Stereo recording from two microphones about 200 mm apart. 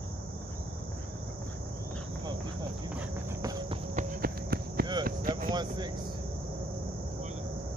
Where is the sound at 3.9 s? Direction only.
40° right (ahead or behind).